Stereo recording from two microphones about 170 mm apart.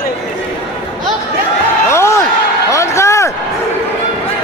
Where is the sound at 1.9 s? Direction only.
15° left (ahead or behind).